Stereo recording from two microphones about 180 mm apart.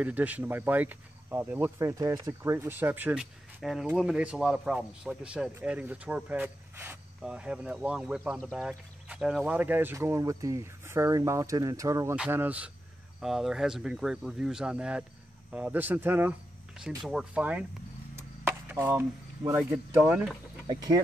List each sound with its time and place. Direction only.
0.0 s speech: 10° right (ahead or behind)
18.1 s chop: 15° right (ahead or behind)
20.6 s speech: 20° right (ahead or behind)